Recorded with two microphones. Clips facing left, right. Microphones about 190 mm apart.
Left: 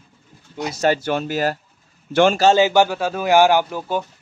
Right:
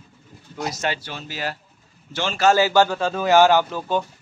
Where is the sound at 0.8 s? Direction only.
50° left (ahead or behind).